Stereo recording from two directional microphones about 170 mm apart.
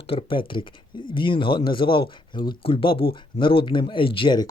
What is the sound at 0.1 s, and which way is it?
Speech, 30° left (ahead or behind).